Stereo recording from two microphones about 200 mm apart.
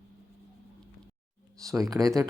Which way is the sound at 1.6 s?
15° right (ahead or behind).